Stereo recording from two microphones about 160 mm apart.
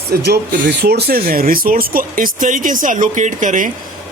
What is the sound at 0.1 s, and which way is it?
Speech, 85° right.